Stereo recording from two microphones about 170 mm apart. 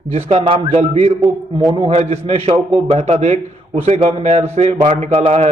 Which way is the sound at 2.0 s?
40° right (ahead or behind).